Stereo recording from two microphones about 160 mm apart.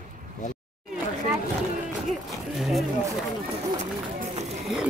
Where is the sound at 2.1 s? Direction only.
Centre (ahead or behind).